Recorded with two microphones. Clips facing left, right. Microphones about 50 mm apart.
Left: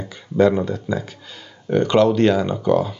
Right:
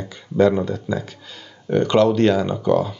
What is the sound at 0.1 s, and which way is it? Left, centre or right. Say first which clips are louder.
Speech: even; centre.